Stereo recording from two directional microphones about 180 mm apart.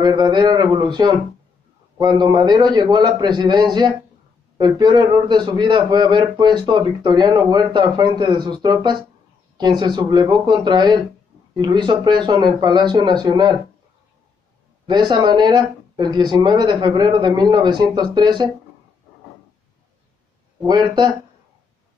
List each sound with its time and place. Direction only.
0.0 s a man's voice: 25° right (ahead or behind)
14.9 s a man's voice: 25° right (ahead or behind)
20.6 s a man's voice: 25° right (ahead or behind)